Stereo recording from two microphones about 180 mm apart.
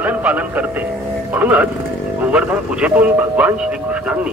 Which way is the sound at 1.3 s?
10° right (ahead or behind).